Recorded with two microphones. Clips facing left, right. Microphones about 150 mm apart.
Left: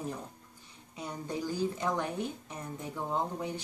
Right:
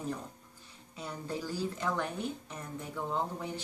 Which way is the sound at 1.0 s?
15° left (ahead or behind).